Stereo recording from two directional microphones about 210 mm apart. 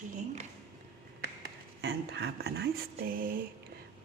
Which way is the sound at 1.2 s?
55° right (ahead or behind).